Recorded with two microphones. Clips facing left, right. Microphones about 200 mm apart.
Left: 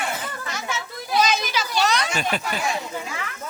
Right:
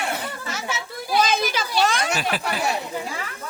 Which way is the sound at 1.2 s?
55° right (ahead or behind).